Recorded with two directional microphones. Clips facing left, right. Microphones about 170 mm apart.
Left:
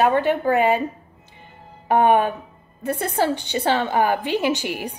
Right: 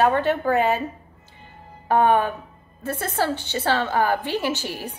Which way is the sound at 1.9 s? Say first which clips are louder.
Left 2 dB; 15° left (ahead or behind).